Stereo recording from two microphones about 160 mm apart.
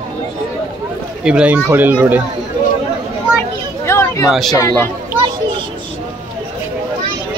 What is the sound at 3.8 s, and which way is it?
Chatter, 15° left (ahead or behind).